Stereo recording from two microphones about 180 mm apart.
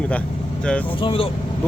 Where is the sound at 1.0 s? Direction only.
30° left (ahead or behind).